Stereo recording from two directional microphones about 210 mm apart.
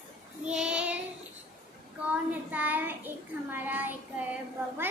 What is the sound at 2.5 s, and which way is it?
A child's voice, 5° right (ahead or behind).